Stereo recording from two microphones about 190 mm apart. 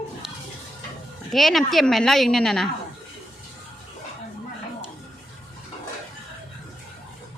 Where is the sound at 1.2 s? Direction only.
Centre (ahead or behind).